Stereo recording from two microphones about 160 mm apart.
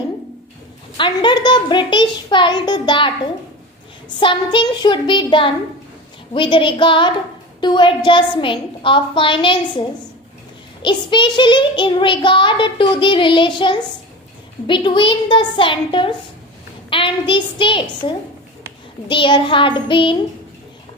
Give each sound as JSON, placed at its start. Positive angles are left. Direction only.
{"t": 0.9, "sound": "a child's voice", "side_deg": 30}
{"t": 4.2, "sound": "child singing", "side_deg": 30}
{"t": 10.8, "sound": "child singing", "side_deg": 30}